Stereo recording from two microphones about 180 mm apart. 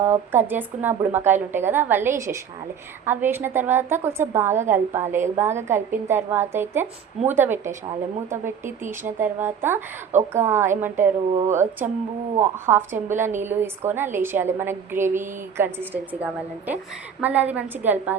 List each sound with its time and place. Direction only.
0.0 s a woman's voice: 10° right (ahead or behind)
10.1 s a woman's voice: 40° right (ahead or behind)
10.4 s a woman's voice: 15° right (ahead or behind)